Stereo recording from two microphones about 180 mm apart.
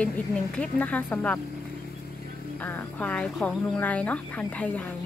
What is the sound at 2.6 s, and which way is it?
Speech, 10° left (ahead or behind).